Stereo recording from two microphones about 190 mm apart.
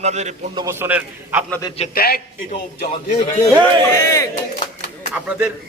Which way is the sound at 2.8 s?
35° left (ahead or behind).